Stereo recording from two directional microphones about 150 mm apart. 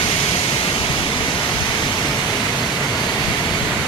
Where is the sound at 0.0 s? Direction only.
35° left (ahead or behind).